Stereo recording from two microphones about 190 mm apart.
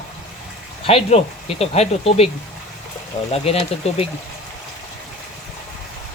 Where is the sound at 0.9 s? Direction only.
30° left (ahead or behind).